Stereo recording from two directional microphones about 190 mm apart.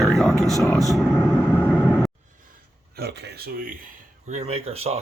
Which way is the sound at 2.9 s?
60° right (ahead or behind).